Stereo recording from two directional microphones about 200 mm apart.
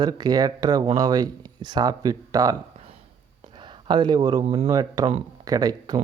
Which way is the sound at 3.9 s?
20° right (ahead or behind).